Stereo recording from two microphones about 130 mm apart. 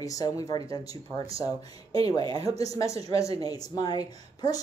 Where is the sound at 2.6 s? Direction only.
25° left (ahead or behind).